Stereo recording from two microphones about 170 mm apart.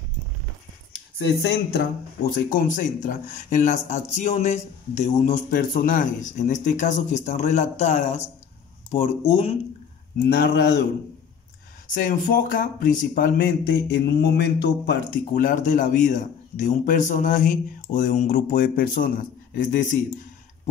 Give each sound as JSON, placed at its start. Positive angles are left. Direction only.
{"t": 1.1, "sound": "speech", "side_deg": 80}
{"t": 2.3, "sound": "a man's voice", "side_deg": 50}
{"t": 10.3, "sound": "speech", "side_deg": 75}
{"t": 11.9, "sound": "a man's voice", "side_deg": 50}
{"t": 13.9, "sound": "speech", "side_deg": 70}
{"t": 15.4, "sound": "a man's voice", "side_deg": 50}